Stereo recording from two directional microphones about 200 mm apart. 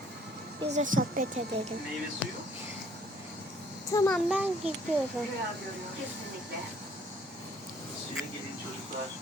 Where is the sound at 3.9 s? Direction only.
15° left (ahead or behind).